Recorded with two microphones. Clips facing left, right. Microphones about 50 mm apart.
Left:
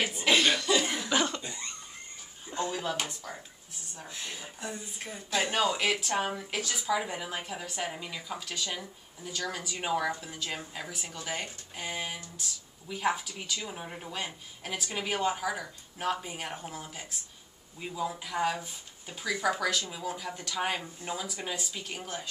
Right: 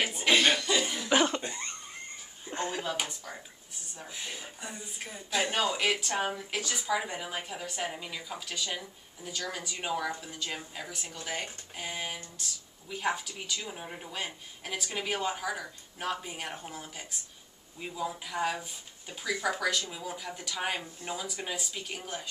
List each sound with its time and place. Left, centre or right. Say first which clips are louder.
0.1 s cough: right 1 dB; centre
1.1 s cough: right 4 dB; right
1.4 s a sound: right 3 dB; right
2.7 s speech: left 1 dB; centre